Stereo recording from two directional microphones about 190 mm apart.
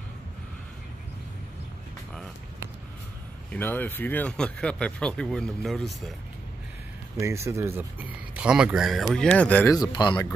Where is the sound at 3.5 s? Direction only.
10° left (ahead or behind).